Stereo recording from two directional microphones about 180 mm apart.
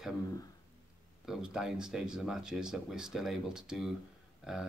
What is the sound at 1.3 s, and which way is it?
Speech, 5° right (ahead or behind).